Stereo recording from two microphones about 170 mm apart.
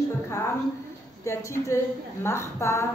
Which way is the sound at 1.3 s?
15° left (ahead or behind).